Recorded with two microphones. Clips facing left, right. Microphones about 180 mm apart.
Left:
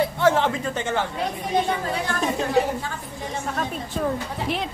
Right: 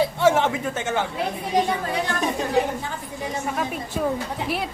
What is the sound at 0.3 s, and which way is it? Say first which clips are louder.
Speech: even; 10° right (ahead or behind).